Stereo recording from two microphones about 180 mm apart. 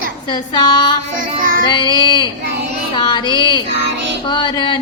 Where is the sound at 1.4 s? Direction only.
50° right (ahead or behind).